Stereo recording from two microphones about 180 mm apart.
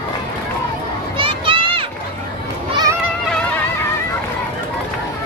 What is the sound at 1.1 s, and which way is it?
Children playing, 30° right (ahead or behind).